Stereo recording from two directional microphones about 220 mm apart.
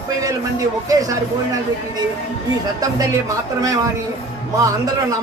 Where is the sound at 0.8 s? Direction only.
15° right (ahead or behind).